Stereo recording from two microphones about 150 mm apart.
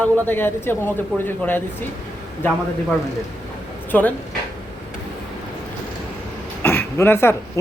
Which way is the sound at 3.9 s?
10° left (ahead or behind).